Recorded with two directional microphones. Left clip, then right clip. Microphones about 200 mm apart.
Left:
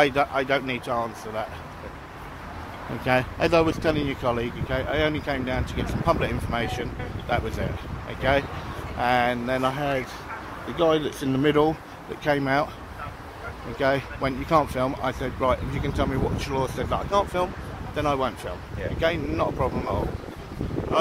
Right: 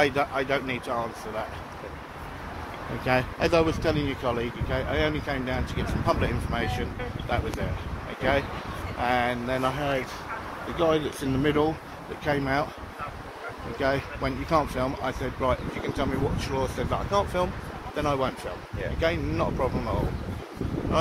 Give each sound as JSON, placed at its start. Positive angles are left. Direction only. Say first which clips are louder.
{"t": 0.0, "sound": "speech", "louder": "left 3 dB", "side_deg": 45}
{"t": 3.1, "sound": "speech", "louder": "left 2 dB", "side_deg": 35}
{"t": 13.7, "sound": "speech", "louder": "left 3 dB", "side_deg": 40}